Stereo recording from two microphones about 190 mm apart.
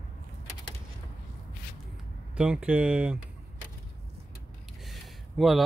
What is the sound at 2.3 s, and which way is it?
Speech, 5° right (ahead or behind).